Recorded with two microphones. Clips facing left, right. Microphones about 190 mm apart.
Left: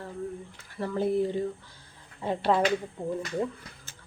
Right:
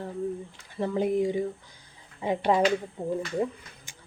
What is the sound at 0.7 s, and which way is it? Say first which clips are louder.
Speech: right 1 dB; 20° right (ahead or behind).